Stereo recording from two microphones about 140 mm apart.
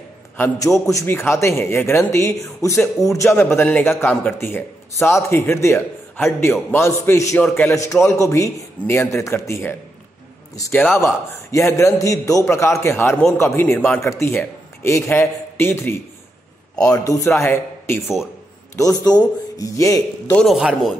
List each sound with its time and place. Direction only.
0.4 s a man's voice: 20° left (ahead or behind)
17.0 s a man's voice: 25° left (ahead or behind)
18.0 s speech: 5° right (ahead or behind)
18.8 s a man's voice: 25° left (ahead or behind)
20.3 s speech: centre (ahead or behind)